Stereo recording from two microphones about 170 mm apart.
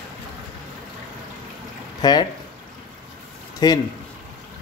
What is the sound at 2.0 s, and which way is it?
Speech, 25° left (ahead or behind).